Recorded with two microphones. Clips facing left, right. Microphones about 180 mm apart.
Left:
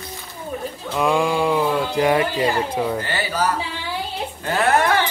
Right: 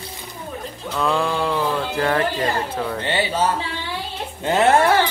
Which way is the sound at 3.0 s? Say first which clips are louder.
Right 2 dB; 25° right (ahead or behind).